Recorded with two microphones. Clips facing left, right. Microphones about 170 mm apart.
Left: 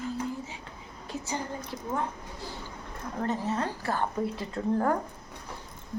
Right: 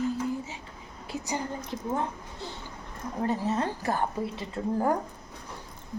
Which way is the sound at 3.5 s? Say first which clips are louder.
Right 2 dB; 20° right (ahead or behind).